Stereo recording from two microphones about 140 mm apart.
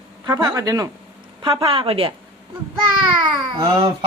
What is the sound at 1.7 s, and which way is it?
Speech, 40° right (ahead or behind).